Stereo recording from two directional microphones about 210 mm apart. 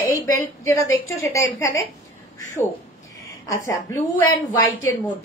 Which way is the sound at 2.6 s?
15° left (ahead or behind).